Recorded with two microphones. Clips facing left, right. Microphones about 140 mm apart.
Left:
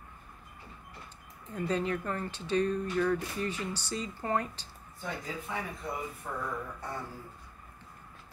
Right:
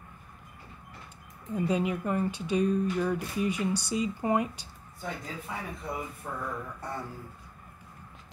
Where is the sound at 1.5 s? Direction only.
10° right (ahead or behind).